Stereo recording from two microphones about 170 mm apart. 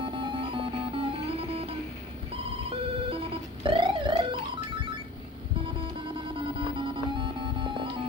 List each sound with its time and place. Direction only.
0.0 s music: 30° right (ahead or behind)
2.6 s a sound: 35° right (ahead or behind)
6.1 s music: 30° right (ahead or behind)